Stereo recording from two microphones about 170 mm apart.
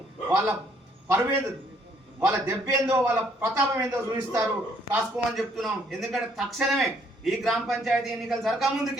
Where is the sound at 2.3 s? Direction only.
15° right (ahead or behind).